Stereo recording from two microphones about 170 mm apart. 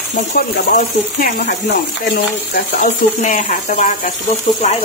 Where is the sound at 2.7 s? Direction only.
50° left (ahead or behind).